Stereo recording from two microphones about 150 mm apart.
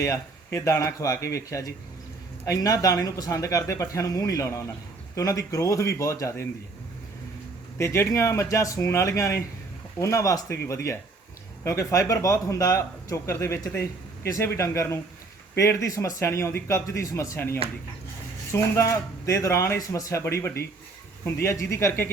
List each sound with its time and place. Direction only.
0.0 s a man's voice: 20° left (ahead or behind)
7.8 s a man's voice: 20° left (ahead or behind)
11.6 s a man's voice: 20° left (ahead or behind)